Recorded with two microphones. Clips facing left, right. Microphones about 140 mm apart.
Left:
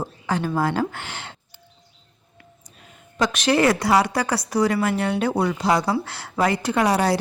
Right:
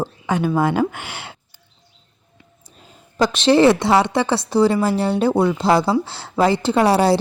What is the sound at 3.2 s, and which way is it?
A woman's voice, 30° right (ahead or behind).